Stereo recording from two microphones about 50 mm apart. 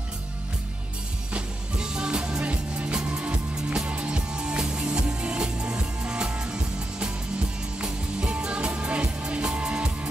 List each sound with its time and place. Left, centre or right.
1.3 s music: centre